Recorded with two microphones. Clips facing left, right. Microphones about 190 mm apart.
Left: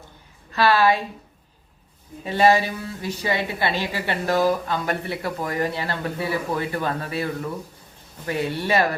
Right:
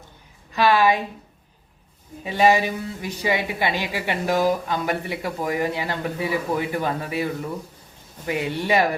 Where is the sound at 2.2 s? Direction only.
15° right (ahead or behind).